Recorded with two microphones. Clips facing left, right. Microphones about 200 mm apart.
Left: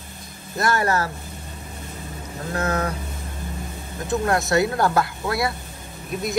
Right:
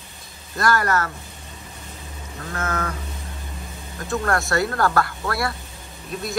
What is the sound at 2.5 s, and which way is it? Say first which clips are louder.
Speech: left 3 dB; 35° left (ahead or behind).